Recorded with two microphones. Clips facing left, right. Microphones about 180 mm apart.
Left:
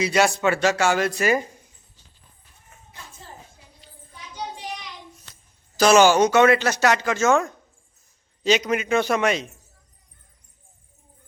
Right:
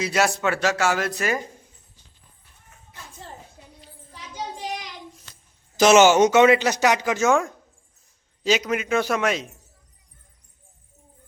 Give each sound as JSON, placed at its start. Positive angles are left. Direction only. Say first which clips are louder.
{"t": 0.0, "sound": "speech", "louder": "left 2 dB", "side_deg": 0}
{"t": 5.7, "sound": "speech", "louder": "right 1 dB", "side_deg": -20}